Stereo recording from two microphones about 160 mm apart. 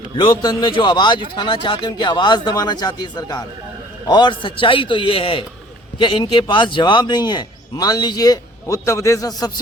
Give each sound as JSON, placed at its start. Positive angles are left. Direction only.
{"t": 0.2, "sound": "a man's voice", "side_deg": 30}